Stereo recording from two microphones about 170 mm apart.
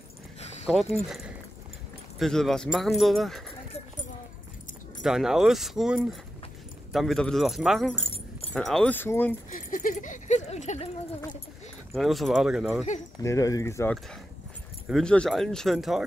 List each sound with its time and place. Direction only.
0.7 s speech: centre (ahead or behind)
5.0 s speech: 5° right (ahead or behind)
9.5 s a sound: 50° left (ahead or behind)
11.9 s speech: centre (ahead or behind)
13.2 s speech: 20° left (ahead or behind)
14.9 s speech: 5° left (ahead or behind)